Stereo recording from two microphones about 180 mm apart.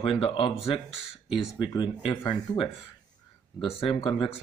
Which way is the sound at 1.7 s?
30° left (ahead or behind).